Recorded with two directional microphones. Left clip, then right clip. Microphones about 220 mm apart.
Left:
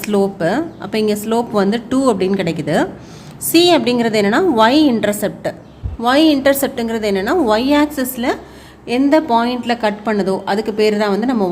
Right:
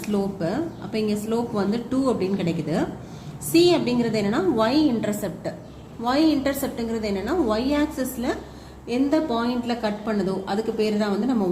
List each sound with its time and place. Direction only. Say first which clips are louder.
0.0 s a woman's voice: left 10 dB; 50° left (ahead or behind)